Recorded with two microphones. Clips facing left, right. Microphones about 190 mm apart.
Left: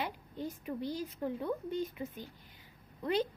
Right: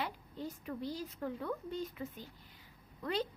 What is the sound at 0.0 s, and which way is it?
A woman's voice, 15° left (ahead or behind).